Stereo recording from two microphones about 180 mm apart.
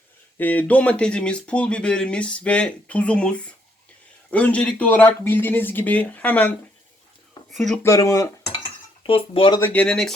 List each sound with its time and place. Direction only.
0.3 s speech: 10° left (ahead or behind)
7.5 s speech: centre (ahead or behind)
7.8 s speech: 15° left (ahead or behind)
8.6 s cutlery: 30° left (ahead or behind)
9.6 s speech: 10° left (ahead or behind)